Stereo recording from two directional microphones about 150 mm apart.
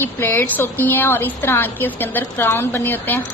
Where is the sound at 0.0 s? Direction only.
15° left (ahead or behind).